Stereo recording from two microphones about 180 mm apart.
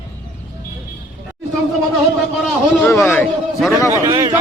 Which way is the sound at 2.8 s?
15° left (ahead or behind).